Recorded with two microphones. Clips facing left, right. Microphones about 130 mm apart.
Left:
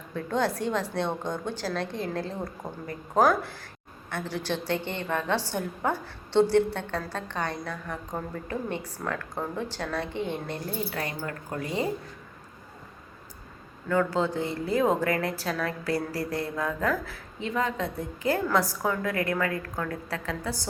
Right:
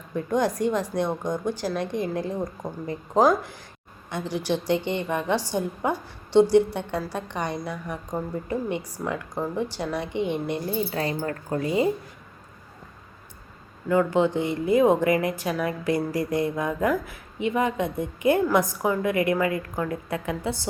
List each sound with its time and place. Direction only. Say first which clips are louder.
0.1 s a woman's voice: right 3 dB; 15° right (ahead or behind)
10.9 s speech: right 6 dB; 30° right (ahead or behind)
11.6 s speech: right 6 dB; 20° right (ahead or behind)
13.8 s a woman's voice: right 4 dB; 15° right (ahead or behind)